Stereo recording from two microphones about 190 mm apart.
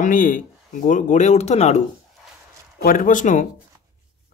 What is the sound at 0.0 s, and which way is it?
Speech, 45° left (ahead or behind).